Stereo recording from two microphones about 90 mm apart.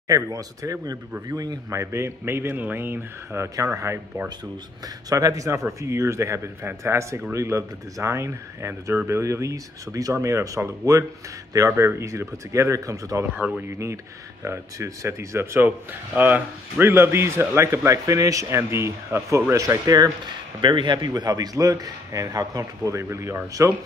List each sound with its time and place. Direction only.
0.1 s a man's voice: 40° right (ahead or behind); by 3.4 s 25° right (ahead or behind)
3.5 s speech: 35° right (ahead or behind)
5.1 s speech: 35° right (ahead or behind)
20.6 s a man's voice: 60° right (ahead or behind)
21.1 s speech: 45° right (ahead or behind)
22.9 s speech: 30° right (ahead or behind)